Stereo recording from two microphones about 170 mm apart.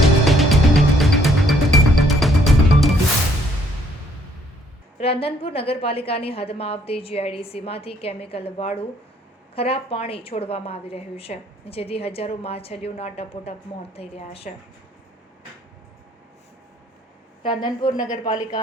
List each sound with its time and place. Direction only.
0.0 s music: centre (ahead or behind)
4.9 s a woman's voice: 35° left (ahead or behind)
17.4 s a woman's voice: 30° left (ahead or behind)